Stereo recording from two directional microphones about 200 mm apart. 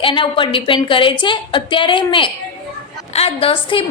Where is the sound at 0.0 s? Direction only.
25° left (ahead or behind).